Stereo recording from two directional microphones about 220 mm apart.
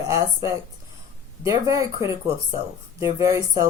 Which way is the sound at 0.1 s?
15° right (ahead or behind).